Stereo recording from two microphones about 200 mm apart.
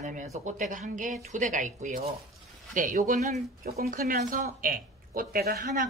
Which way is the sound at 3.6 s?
50° right (ahead or behind).